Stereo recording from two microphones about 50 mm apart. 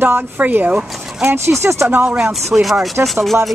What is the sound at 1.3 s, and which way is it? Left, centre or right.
Speech, right.